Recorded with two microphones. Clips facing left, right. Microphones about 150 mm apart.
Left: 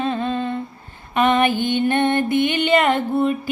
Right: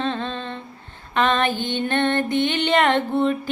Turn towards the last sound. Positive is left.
turn(degrees=5)  # may be behind; listen again after turning